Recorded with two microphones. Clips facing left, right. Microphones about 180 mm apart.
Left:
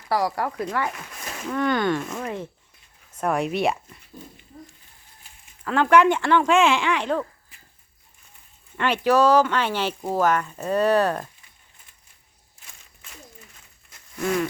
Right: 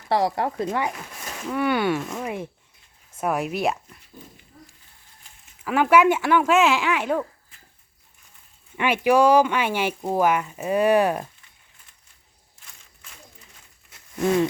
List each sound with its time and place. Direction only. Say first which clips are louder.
0.1 s speech: right 2 dB; 25° right (ahead or behind); by 4.0 s centre (ahead or behind)
4.5 s a sound: left 7 dB; 20° left (ahead or behind)
5.5 s speech: even; 10° right (ahead or behind)
8.7 s speech: right 1 dB; 10° right (ahead or behind)
14.2 s speech: right 4 dB; 25° right (ahead or behind)